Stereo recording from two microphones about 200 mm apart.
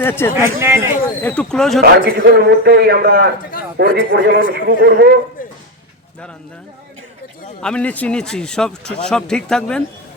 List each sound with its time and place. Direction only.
0.0 s a man's voice: 10° left (ahead or behind)
0.3 s a man's voice: 10° right (ahead or behind)
1.2 s a man's voice: 5° left (ahead or behind)
1.8 s a man's voice: 50° right (ahead or behind)
7.6 s a man's voice: 5° left (ahead or behind)